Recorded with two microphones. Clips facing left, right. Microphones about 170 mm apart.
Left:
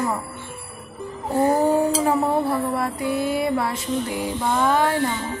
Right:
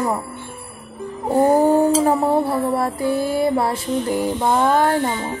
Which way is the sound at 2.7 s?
40° right (ahead or behind).